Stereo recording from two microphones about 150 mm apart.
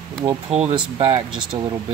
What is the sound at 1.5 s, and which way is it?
Speech, 25° right (ahead or behind).